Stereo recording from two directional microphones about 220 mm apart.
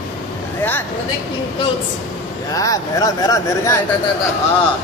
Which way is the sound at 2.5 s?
15° left (ahead or behind).